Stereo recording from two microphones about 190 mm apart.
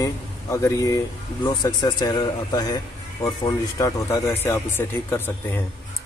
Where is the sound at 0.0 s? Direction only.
15° left (ahead or behind).